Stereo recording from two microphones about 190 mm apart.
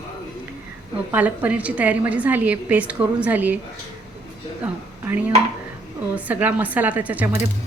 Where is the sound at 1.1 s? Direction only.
10° right (ahead or behind).